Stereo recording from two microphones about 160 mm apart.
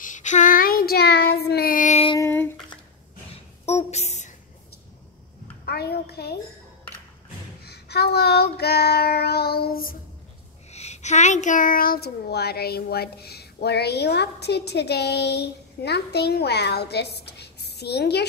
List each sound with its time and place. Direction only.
0.0 s child singing: 50° left (ahead or behind)
2.1 s a sound: 15° left (ahead or behind)
3.6 s a sound: 40° left (ahead or behind)
5.7 s a child's voice: 85° left
7.6 s child singing: 90° left; by 9.9 s 70° left (ahead or behind)
10.7 s speech: 45° left (ahead or behind); by 18.2 s 90° left